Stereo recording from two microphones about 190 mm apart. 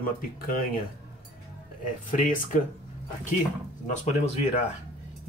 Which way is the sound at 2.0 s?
45° left (ahead or behind).